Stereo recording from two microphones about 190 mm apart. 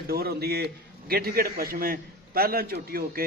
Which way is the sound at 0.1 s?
55° right (ahead or behind).